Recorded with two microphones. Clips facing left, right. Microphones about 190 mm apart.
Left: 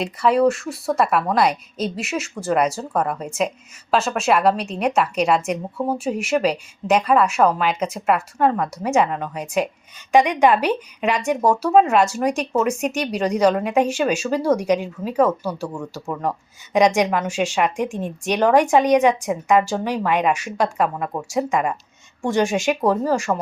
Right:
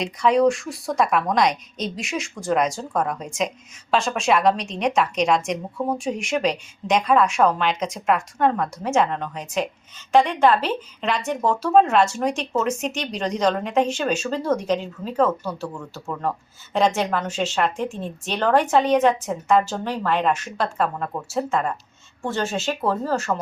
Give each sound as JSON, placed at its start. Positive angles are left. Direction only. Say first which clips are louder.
{"t": 0.0, "sound": "a woman's voice", "louder": "left 1 dB", "side_deg": 5}